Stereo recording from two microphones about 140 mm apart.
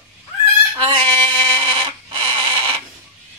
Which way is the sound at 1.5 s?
40° right (ahead or behind).